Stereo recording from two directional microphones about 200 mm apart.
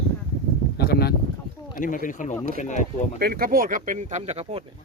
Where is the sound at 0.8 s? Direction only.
55° left (ahead or behind).